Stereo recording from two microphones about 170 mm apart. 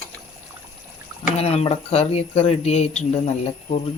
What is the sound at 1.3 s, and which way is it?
Speech, 40° left (ahead or behind).